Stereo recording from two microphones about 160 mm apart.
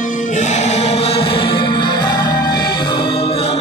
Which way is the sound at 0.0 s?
55° left (ahead or behind).